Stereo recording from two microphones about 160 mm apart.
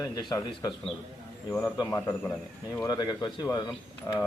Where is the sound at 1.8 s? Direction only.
20° left (ahead or behind).